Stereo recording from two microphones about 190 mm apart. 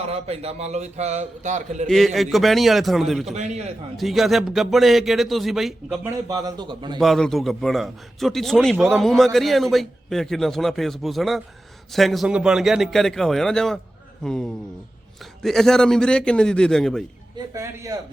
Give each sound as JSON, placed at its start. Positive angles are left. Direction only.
{"t": 0.1, "sound": "a man's voice", "side_deg": -35}
{"t": 1.9, "sound": "a man's voice", "side_deg": 0}
{"t": 3.3, "sound": "a man's voice", "side_deg": -35}
{"t": 3.9, "sound": "a man's voice", "side_deg": 0}
{"t": 6.1, "sound": "a man's voice", "side_deg": -20}
{"t": 7.0, "sound": "a man's voice", "side_deg": 0}
{"t": 17.3, "sound": "a man's voice", "side_deg": -15}